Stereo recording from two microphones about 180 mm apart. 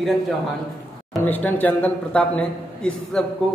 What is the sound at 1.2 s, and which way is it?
A man's voice, 10° left (ahead or behind).